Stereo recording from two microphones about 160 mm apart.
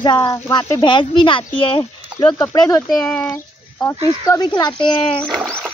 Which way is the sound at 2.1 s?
20° left (ahead or behind).